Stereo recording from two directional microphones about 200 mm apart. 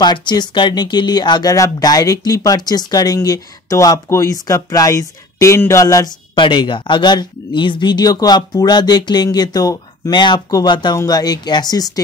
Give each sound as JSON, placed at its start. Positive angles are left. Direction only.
{"t": 0.0, "sound": "speech", "side_deg": 20}